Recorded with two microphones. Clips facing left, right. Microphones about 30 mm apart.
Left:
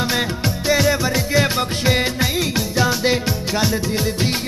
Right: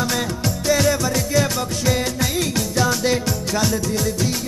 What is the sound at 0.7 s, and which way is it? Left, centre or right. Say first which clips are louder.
Music: left 1 dB; left.